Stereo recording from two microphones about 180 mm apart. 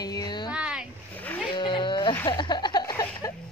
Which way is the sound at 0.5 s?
5° right (ahead or behind).